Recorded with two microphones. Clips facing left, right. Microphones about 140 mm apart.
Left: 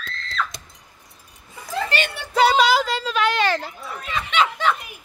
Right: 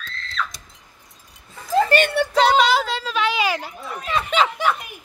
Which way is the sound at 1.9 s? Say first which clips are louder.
Right 8 dB; 50° right (ahead or behind).